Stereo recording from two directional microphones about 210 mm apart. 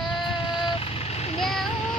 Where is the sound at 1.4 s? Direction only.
Centre (ahead or behind).